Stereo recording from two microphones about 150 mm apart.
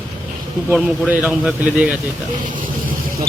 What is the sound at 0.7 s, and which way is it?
A man's voice, 10° right (ahead or behind).